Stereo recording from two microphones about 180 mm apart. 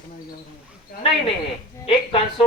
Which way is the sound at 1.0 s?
30° left (ahead or behind).